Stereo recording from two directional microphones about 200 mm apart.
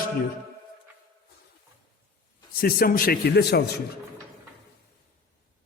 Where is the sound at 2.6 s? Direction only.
50° left (ahead or behind).